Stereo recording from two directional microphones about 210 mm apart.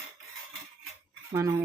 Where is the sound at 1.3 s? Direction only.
15° right (ahead or behind).